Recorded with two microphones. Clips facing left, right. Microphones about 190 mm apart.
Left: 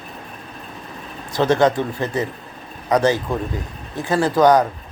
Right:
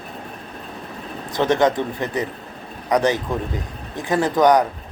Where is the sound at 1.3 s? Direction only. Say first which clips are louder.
Left 1 dB; 20° right (ahead or behind).